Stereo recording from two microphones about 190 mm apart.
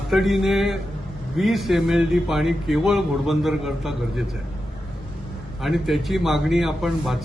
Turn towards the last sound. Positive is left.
turn(degrees=0)  # may be behind; listen again after turning